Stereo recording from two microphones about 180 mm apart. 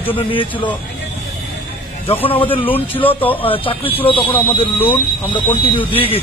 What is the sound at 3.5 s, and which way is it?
Speech, 30° left (ahead or behind).